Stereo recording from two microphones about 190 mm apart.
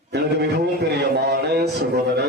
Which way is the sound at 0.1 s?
60° right (ahead or behind).